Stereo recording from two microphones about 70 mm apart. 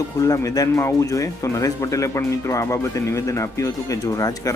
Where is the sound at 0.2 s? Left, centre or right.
Left.